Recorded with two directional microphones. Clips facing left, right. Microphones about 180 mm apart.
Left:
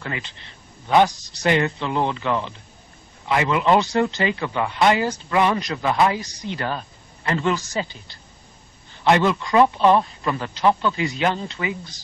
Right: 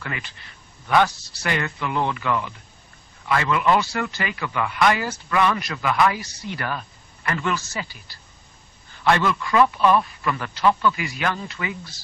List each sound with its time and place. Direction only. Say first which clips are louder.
0.0 s speech: left 2 dB; 25° left (ahead or behind)